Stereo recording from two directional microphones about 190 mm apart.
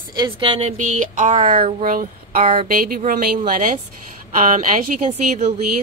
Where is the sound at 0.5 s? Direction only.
40° right (ahead or behind).